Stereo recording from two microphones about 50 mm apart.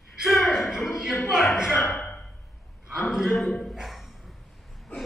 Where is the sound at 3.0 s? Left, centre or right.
Centre.